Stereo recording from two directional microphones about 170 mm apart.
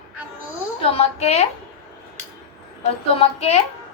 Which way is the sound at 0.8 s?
35° left (ahead or behind).